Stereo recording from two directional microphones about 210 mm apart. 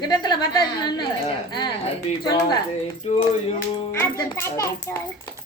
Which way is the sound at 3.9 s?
10° left (ahead or behind).